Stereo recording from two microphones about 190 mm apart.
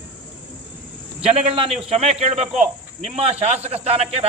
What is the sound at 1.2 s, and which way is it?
Speech, 30° right (ahead or behind).